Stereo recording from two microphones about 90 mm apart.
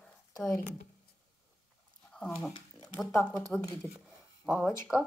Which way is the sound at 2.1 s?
10° left (ahead or behind).